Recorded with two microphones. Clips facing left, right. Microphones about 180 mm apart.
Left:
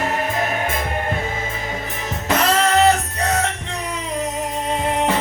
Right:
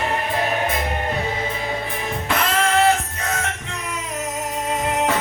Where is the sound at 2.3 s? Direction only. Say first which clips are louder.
Left 4 dB; 40° left (ahead or behind).